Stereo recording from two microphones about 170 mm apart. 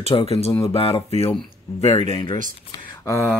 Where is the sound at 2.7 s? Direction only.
15° left (ahead or behind).